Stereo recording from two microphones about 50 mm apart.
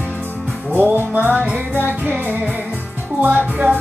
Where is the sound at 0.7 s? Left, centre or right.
Right.